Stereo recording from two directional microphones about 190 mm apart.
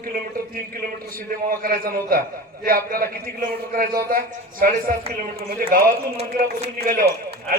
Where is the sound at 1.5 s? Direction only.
50° right (ahead or behind).